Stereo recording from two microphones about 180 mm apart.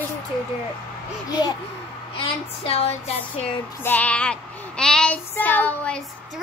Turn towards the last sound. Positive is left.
turn(degrees=10)  # may be behind; listen again after turning